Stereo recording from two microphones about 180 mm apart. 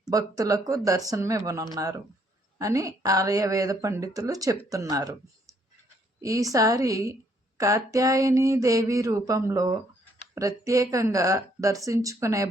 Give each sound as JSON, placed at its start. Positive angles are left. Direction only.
{"t": 0.1, "sound": "speech", "side_deg": -20}
{"t": 6.2, "sound": "speech", "side_deg": -20}
{"t": 7.6, "sound": "a sound", "side_deg": -20}